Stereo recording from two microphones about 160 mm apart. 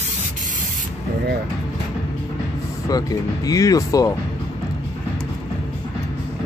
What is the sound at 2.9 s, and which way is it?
Speech, 25° left (ahead or behind).